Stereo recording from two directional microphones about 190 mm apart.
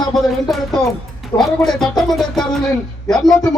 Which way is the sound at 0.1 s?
Centre (ahead or behind).